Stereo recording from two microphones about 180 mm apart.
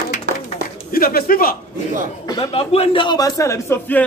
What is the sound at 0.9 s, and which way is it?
Speech, 55° left (ahead or behind).